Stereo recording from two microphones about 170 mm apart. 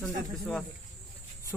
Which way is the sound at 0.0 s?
5° left (ahead or behind).